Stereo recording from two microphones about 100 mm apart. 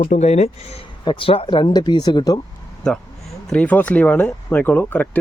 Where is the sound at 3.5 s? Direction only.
15° left (ahead or behind).